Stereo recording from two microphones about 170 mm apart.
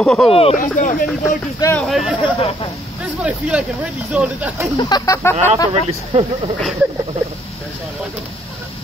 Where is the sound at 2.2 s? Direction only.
30° left (ahead or behind).